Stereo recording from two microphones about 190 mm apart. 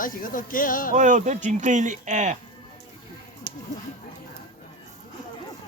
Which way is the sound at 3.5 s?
15° right (ahead or behind).